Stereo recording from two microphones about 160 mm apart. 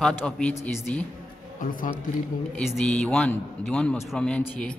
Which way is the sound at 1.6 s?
60° left (ahead or behind).